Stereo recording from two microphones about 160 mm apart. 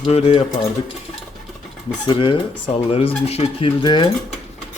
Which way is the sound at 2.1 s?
35° left (ahead or behind).